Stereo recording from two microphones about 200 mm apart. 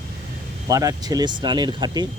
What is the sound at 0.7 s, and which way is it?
Speech, 15° right (ahead or behind).